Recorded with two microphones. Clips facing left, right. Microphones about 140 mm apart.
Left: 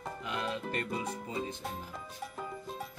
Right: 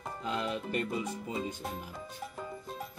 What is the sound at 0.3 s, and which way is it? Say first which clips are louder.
Speech: right 2 dB; 20° right (ahead or behind).